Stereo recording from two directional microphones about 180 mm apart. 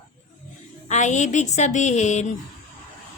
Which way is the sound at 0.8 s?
40° left (ahead or behind).